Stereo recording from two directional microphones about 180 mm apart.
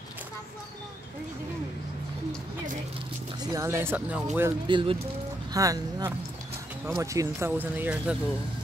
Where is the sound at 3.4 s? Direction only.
20° right (ahead or behind).